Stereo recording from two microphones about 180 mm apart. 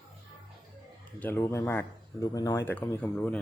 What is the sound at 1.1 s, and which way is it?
Speech, 10° left (ahead or behind).